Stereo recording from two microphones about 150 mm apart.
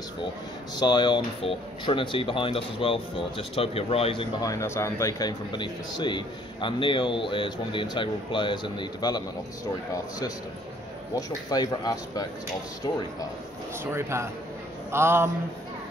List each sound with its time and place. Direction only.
0.7 s a man's voice: 30° left (ahead or behind)
4.4 s a man's voice: 20° left (ahead or behind)
13.8 s a man's voice: 15° right (ahead or behind)